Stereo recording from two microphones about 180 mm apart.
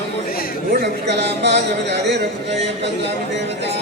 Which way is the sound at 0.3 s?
55° left (ahead or behind).